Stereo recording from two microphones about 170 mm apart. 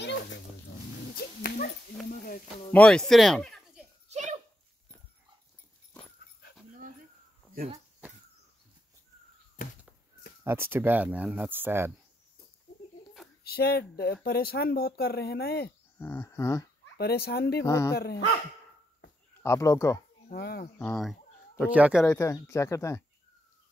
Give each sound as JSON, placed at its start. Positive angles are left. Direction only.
{"t": 0.0, "sound": "dog", "side_deg": 90}
{"t": 1.1, "sound": "dog", "side_deg": 60}
{"t": 2.0, "sound": "a sound", "side_deg": 55}
{"t": 2.7, "sound": "speech", "side_deg": 5}
{"t": 10.4, "sound": "speech", "side_deg": -15}
{"t": 13.4, "sound": "speech", "side_deg": 65}
{"t": 16.0, "sound": "speech", "side_deg": 15}
{"t": 16.9, "sound": "speech", "side_deg": 65}
{"t": 17.6, "sound": "speech", "side_deg": 20}
{"t": 19.4, "sound": "speech", "side_deg": 15}
{"t": 20.2, "sound": "speech", "side_deg": 65}
{"t": 20.8, "sound": "speech", "side_deg": 0}
{"t": 22.0, "sound": "speech", "side_deg": 15}